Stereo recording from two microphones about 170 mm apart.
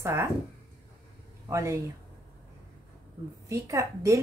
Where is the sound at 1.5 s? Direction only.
15° right (ahead or behind).